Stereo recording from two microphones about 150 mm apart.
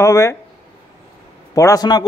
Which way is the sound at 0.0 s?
20° left (ahead or behind).